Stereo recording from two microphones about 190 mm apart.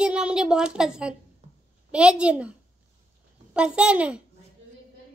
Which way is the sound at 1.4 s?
35° right (ahead or behind).